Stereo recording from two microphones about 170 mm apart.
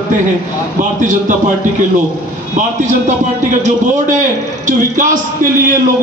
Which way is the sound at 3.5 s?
45° right (ahead or behind).